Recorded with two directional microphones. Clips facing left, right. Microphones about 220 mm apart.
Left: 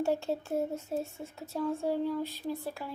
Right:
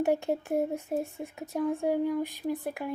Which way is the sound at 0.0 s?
15° right (ahead or behind).